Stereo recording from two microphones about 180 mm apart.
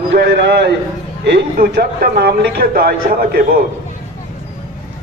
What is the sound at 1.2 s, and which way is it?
Speech, 70° right (ahead or behind).